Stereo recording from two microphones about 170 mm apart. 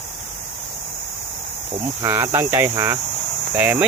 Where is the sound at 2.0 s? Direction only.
15° right (ahead or behind).